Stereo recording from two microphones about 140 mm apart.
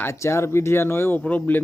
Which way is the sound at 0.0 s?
20° left (ahead or behind).